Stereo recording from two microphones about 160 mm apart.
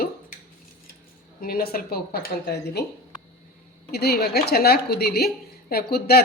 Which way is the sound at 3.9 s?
80° left.